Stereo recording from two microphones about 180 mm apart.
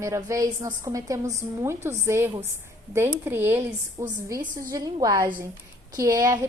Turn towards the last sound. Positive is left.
turn(degrees=-20)  # may be behind; listen again after turning